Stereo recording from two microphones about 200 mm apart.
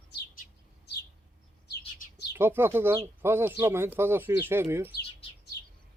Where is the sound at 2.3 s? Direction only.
10° right (ahead or behind).